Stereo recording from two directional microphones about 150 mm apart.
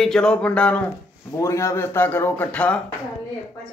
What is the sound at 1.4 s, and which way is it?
A man's voice, 20° left (ahead or behind).